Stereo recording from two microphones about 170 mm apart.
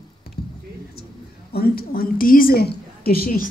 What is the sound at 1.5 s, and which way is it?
Speech, 65° left (ahead or behind).